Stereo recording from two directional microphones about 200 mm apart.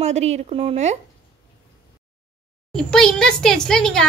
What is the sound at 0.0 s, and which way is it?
Speech, 35° right (ahead or behind).